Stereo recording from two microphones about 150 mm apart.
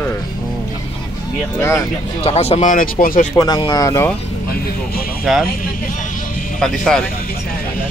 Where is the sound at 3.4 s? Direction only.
25° left (ahead or behind).